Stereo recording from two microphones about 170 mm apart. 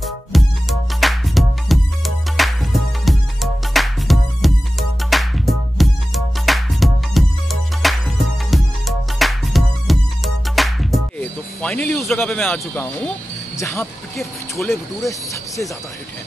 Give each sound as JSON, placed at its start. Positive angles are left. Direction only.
{"t": 0.0, "sound": "music", "side_deg": 0}
{"t": 13.6, "sound": "speech", "side_deg": 15}